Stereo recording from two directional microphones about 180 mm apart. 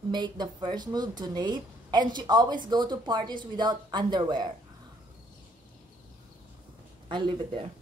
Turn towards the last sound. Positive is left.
turn(degrees=-30)  # may be behind; listen again after turning